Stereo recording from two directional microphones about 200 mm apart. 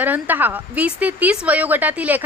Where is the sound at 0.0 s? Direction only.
10° right (ahead or behind).